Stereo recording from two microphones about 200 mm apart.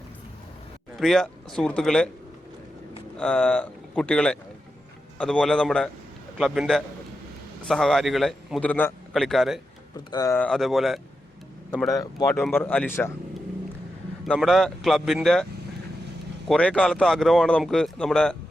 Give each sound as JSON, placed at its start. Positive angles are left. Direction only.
{"t": 0.9, "sound": "speech", "side_deg": 0}
{"t": 3.2, "sound": "speech", "side_deg": 5}
{"t": 10.1, "sound": "speech", "side_deg": 15}
{"t": 11.7, "sound": "speech", "side_deg": 15}
{"t": 12.3, "sound": "speech", "side_deg": 0}
{"t": 14.3, "sound": "speech", "side_deg": 0}
{"t": 16.5, "sound": "speech", "side_deg": 5}